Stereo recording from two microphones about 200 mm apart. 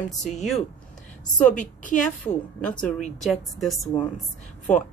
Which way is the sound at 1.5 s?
40° left (ahead or behind).